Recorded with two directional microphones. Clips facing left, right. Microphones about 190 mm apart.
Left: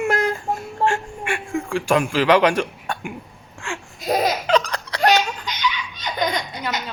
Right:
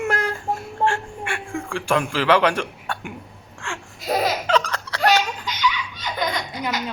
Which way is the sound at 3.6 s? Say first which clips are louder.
Left 2 dB; 15° left (ahead or behind).